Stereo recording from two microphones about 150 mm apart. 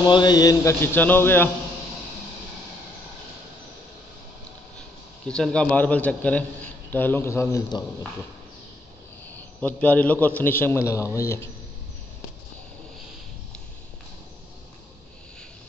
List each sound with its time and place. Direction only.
0.0 s a man's voice: 25° left (ahead or behind)
5.3 s a man's voice: 5° left (ahead or behind)
9.6 s a man's voice: 10° left (ahead or behind)